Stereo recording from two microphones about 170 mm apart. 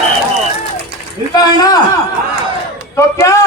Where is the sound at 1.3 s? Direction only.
25° left (ahead or behind).